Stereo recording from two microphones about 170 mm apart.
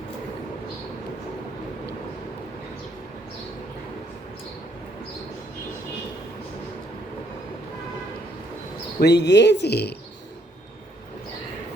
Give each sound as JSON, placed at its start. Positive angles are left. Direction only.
{"t": 9.0, "sound": "speech", "side_deg": 85}